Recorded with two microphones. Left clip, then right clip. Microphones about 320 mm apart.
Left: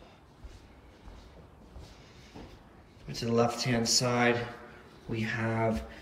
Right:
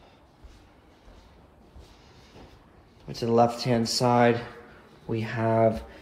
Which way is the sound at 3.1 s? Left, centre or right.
Centre.